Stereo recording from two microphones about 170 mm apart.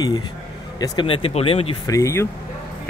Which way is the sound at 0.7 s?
25° left (ahead or behind).